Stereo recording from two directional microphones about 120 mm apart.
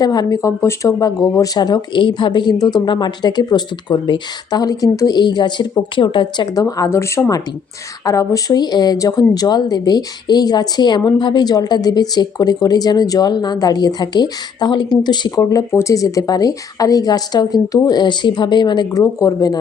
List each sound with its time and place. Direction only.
0.0 s speech: 35° left (ahead or behind)
15.4 s speech: 25° left (ahead or behind)